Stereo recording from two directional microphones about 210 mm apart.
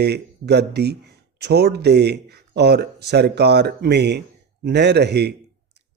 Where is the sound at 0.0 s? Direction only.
50° right (ahead or behind).